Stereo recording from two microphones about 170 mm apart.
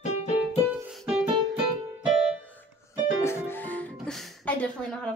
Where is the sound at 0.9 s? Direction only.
Centre (ahead or behind).